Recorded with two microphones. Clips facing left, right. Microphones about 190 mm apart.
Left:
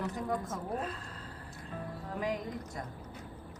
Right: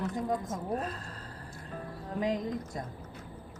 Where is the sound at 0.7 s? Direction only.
40° right (ahead or behind).